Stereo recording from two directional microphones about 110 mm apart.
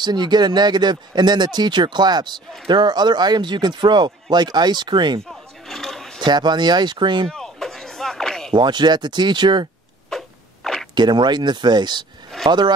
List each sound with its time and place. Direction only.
0.0 s speech: 40° right (ahead or behind)
5.3 s roar: 5° left (ahead or behind)
6.2 s speech: 40° right (ahead or behind)
7.2 s a sound: 5° left (ahead or behind)
8.5 s speech: 45° right (ahead or behind)
10.0 s a sound: 5° left (ahead or behind)
11.0 s speech: 45° right (ahead or behind)